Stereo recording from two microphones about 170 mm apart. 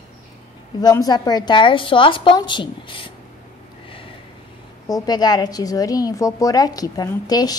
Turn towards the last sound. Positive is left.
turn(degrees=20)  # may be behind; listen again after turning